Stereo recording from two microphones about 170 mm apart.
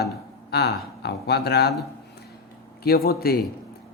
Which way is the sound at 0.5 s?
75° left (ahead or behind).